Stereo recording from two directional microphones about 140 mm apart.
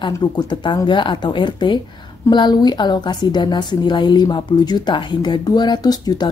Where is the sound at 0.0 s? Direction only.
30° left (ahead or behind).